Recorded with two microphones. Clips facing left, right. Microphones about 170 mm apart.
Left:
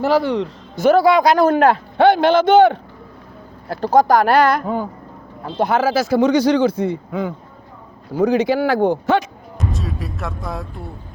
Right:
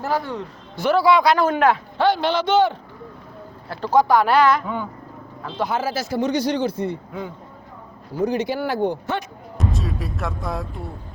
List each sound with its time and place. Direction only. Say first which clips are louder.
0.0 s speech: left 8 dB; 90° left
0.8 s speech: left 4 dB; 45° left (ahead or behind)
2.0 s a man's voice: left 10 dB; 55° left (ahead or behind)
3.7 s speech: left 3 dB; 45° left (ahead or behind)
5.5 s speech: left 7 dB; 65° left (ahead or behind); by 9.2 s 90° left
9.6 s speech: even; centre (ahead or behind)